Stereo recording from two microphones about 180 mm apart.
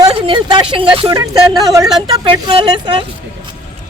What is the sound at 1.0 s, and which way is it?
A woman's voice, 20° right (ahead or behind).